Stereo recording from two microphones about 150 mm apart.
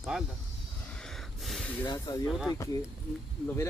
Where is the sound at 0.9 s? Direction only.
5° left (ahead or behind).